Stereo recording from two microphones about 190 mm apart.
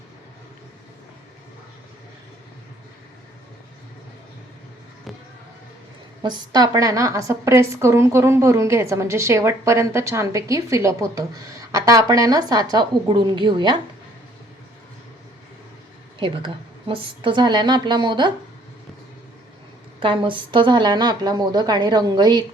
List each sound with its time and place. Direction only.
6.2 s a woman's voice: 20° right (ahead or behind)
16.9 s a woman's voice: 25° right (ahead or behind)
20.0 s a woman's voice: 25° right (ahead or behind)